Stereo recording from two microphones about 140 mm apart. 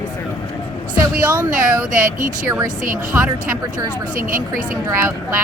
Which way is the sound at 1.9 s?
70° right (ahead or behind).